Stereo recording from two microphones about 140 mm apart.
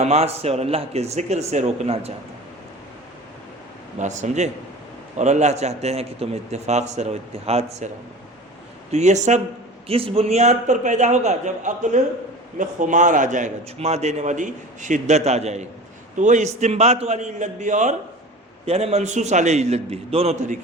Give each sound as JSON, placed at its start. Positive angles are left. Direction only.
{"t": 0.0, "sound": "a man's voice", "side_deg": -50}
{"t": 3.9, "sound": "a man's voice", "side_deg": -55}
{"t": 8.9, "sound": "a man's voice", "side_deg": -55}
{"t": 9.8, "sound": "a man's voice", "side_deg": -45}
{"t": 18.6, "sound": "a man's voice", "side_deg": -50}